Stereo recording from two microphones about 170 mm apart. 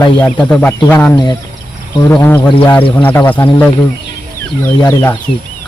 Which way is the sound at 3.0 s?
10° left (ahead or behind).